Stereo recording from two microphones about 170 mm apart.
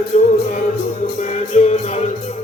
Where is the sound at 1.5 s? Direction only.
40° left (ahead or behind).